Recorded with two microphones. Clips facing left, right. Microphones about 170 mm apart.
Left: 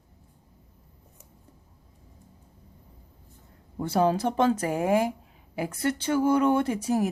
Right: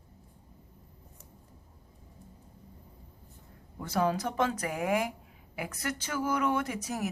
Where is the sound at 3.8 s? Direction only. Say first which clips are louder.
Left 6 dB; 30° left (ahead or behind).